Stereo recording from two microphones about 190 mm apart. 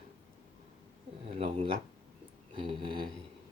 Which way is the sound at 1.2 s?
30° right (ahead or behind).